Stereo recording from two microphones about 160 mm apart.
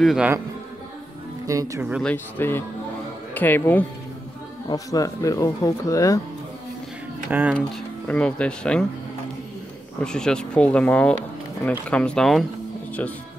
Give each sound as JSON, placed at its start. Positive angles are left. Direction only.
{"t": 0.0, "sound": "speech", "side_deg": -5}
{"t": 1.5, "sound": "speech", "side_deg": -20}
{"t": 2.0, "sound": "speech", "side_deg": 10}
{"t": 4.6, "sound": "speech", "side_deg": 20}
{"t": 7.2, "sound": "speech", "side_deg": -10}
{"t": 8.1, "sound": "speech", "side_deg": 5}
{"t": 10.0, "sound": "speech", "side_deg": 5}